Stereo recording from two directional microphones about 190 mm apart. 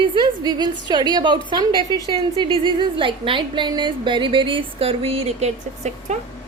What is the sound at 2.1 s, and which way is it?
A woman's voice, 25° right (ahead or behind).